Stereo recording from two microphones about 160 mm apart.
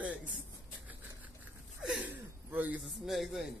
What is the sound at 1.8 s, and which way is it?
Gasp, 5° right (ahead or behind).